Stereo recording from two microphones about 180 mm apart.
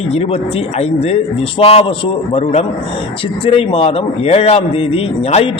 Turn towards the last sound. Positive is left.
turn(degrees=35)  # may be behind; listen again after turning